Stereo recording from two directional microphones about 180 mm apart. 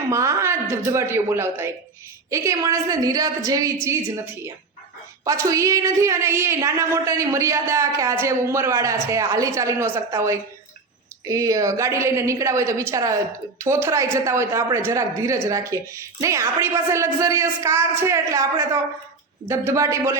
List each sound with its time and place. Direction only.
0.1 s a woman's voice: 15° right (ahead or behind)
5.2 s a woman's voice: 20° right (ahead or behind)